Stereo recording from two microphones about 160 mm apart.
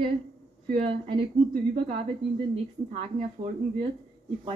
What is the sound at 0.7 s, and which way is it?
A woman's voice, 40° right (ahead or behind).